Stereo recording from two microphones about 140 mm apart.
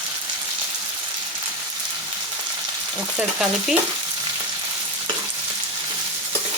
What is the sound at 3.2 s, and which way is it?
Stir, 5° right (ahead or behind).